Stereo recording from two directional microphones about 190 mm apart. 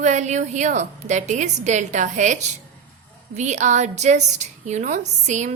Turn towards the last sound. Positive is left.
turn(degrees=-40)  # may be behind; listen again after turning